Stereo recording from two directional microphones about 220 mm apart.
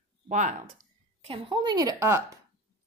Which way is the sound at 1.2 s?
20° right (ahead or behind).